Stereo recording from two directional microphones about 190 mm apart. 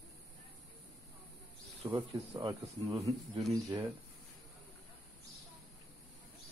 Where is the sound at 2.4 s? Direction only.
20° right (ahead or behind).